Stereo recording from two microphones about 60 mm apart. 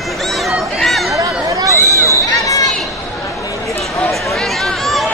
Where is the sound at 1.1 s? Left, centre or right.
Right.